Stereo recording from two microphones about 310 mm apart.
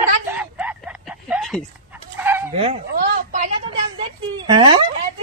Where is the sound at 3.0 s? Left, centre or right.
Right.